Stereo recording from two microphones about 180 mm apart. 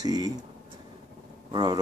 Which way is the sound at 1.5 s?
25° right (ahead or behind).